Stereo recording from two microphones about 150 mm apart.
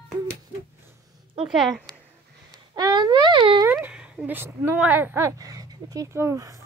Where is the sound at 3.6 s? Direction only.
15° right (ahead or behind).